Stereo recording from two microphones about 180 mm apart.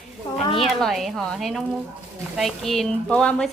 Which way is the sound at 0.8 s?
Centre (ahead or behind).